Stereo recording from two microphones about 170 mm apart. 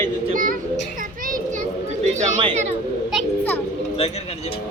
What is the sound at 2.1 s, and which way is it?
Chatter, 45° right (ahead or behind).